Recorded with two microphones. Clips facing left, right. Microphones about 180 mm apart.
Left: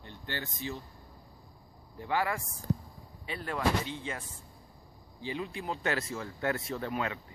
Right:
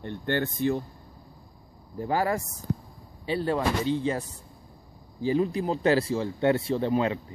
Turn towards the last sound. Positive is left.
turn(degrees=-30)  # may be behind; listen again after turning